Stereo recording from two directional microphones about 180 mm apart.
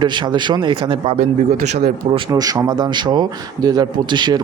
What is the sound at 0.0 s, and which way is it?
Speech, 25° right (ahead or behind).